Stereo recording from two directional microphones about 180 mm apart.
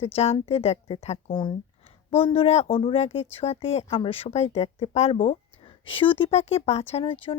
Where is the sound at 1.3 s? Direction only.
25° left (ahead or behind).